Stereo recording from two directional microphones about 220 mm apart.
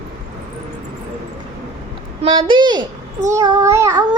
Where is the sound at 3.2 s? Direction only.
15° right (ahead or behind).